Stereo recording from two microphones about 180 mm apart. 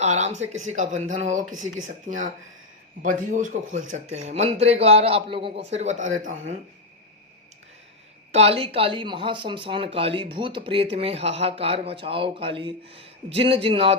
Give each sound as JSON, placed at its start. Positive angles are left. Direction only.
{"t": 0.0, "sound": "a man's voice", "side_deg": -40}
{"t": 8.3, "sound": "speech", "side_deg": -35}